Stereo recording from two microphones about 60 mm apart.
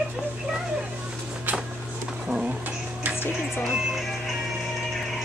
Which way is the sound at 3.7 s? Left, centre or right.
Centre.